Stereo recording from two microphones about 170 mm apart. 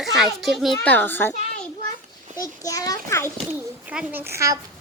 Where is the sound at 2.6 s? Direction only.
20° left (ahead or behind).